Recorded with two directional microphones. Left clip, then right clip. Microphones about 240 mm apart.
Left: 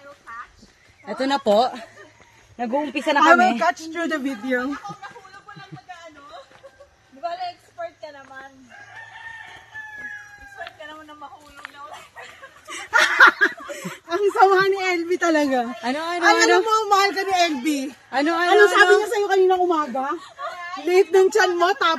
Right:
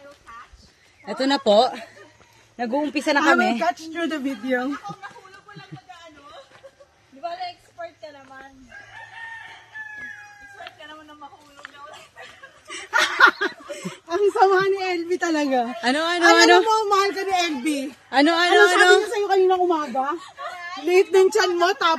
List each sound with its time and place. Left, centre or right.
1.0 s speech: right
2.5 s speech: centre
3.9 s speech: left
7.2 s a sound: left
11.9 s snicker: centre
15.8 s speech: right
16.6 s speech: centre
18.1 s speech: right
18.5 s speech: centre
19.3 s a woman's voice: centre
20.2 s a sound: centre
20.8 s a woman's voice: centre